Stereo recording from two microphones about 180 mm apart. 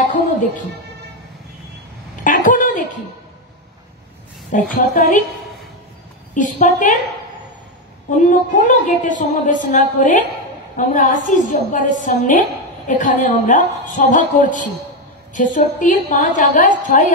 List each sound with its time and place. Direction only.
2.2 s a sound: 50° left (ahead or behind)
4.5 s a woman's voice: 45° left (ahead or behind)
6.3 s a woman's voice: 45° left (ahead or behind)
8.1 s a woman's voice: 45° left (ahead or behind)